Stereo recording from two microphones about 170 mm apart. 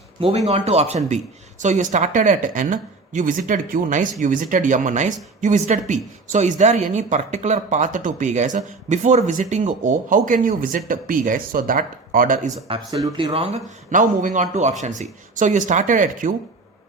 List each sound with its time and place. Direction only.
0.2 s speech: 35° right (ahead or behind); by 12.4 s 55° right (ahead or behind)
12.6 s speech: 30° right (ahead or behind)
13.3 s speech: 35° right (ahead or behind)
13.9 s speech: 50° right (ahead or behind)